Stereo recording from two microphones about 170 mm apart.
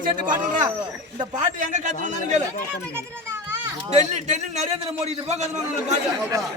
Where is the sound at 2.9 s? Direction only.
15° right (ahead or behind).